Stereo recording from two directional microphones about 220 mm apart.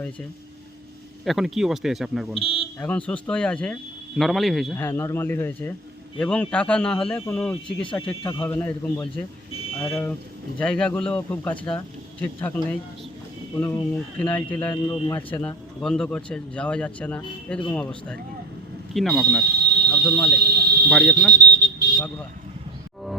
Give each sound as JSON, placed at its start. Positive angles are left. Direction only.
{"t": 1.2, "sound": "speech", "side_deg": 0}
{"t": 2.3, "sound": "speech", "side_deg": 25}
{"t": 2.8, "sound": "speech", "side_deg": 5}
{"t": 4.8, "sound": "speech", "side_deg": 10}
{"t": 8.0, "sound": "a man's voice", "side_deg": 20}
{"t": 8.4, "sound": "speech", "side_deg": 10}
{"t": 13.6, "sound": "speech", "side_deg": 15}
{"t": 14.7, "sound": "a man's voice", "side_deg": 20}
{"t": 15.3, "sound": "speech", "side_deg": 5}
{"t": 19.5, "sound": "smoke detector", "side_deg": -45}
{"t": 19.9, "sound": "speech", "side_deg": 5}
{"t": 20.3, "sound": "a sound", "side_deg": -45}
{"t": 20.9, "sound": "speech", "side_deg": 5}
{"t": 21.3, "sound": "smoke detector", "side_deg": -50}